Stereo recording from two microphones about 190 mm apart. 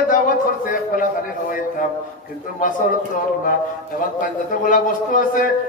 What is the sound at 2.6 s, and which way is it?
Speech, 45° left (ahead or behind).